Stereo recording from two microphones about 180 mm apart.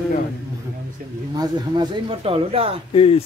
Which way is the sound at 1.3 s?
20° right (ahead or behind).